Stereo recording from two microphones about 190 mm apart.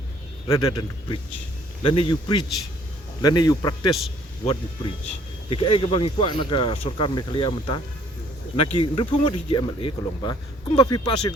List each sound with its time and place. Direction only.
0.4 s speech: 20° left (ahead or behind)
5.5 s speech: 30° left (ahead or behind)